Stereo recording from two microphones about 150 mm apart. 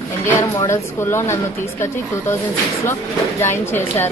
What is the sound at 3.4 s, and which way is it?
Speech, 15° left (ahead or behind).